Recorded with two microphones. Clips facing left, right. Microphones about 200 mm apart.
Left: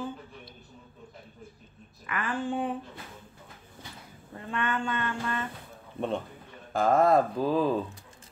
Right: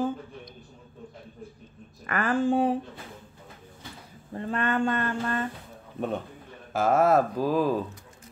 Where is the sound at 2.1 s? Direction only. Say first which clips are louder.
Right 7 dB; 45° right (ahead or behind).